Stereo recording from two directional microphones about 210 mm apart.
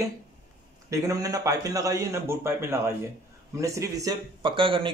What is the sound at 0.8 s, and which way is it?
A man's voice, 15° right (ahead or behind).